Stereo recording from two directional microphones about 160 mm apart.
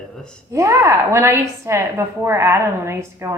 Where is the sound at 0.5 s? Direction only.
20° right (ahead or behind).